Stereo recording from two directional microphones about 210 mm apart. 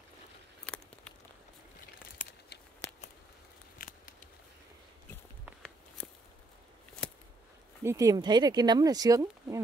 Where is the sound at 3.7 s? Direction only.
40° left (ahead or behind).